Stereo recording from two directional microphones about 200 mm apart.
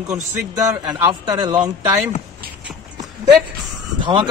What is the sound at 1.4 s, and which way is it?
Speech, 20° right (ahead or behind).